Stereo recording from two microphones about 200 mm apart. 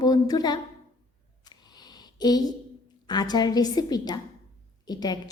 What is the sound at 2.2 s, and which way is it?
A woman's voice, 20° left (ahead or behind).